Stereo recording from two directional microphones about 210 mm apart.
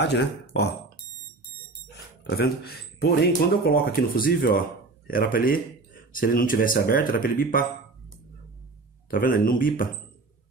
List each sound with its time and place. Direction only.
0.0 s speech: 55° left (ahead or behind)
2.2 s speech: 50° left (ahead or behind)
9.1 s speech: 40° left (ahead or behind)